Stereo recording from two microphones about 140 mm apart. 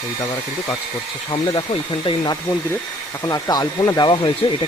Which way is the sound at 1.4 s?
35° left (ahead or behind).